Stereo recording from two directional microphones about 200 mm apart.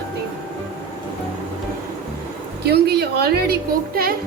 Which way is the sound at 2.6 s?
55° right (ahead or behind).